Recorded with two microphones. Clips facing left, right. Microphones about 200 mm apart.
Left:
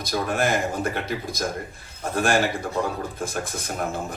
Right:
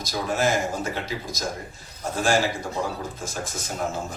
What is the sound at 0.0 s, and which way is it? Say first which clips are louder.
A man's voice: left 1 dB; 55° left (ahead or behind).